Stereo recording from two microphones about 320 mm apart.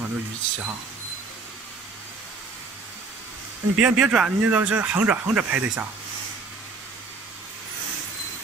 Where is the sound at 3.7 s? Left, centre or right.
Centre.